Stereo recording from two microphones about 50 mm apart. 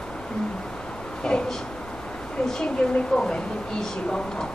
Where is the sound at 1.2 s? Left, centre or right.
Centre.